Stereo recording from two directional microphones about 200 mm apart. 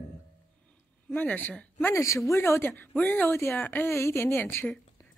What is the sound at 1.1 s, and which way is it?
Speech, 10° left (ahead or behind).